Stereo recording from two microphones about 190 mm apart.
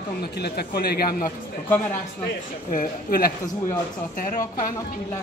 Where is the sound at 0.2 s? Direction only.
55° left (ahead or behind).